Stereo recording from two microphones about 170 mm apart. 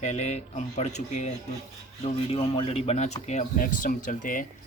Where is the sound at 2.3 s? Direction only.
35° left (ahead or behind).